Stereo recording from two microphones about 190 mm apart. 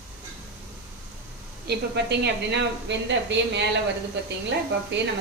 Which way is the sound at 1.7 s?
60° right (ahead or behind).